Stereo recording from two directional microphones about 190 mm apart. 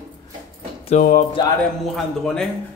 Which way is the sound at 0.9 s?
45° left (ahead or behind).